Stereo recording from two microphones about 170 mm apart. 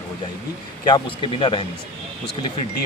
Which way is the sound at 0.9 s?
30° left (ahead or behind).